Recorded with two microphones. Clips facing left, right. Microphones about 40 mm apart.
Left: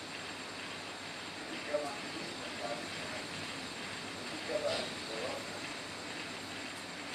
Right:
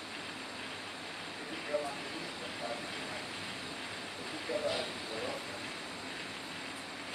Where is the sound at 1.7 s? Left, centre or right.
Centre.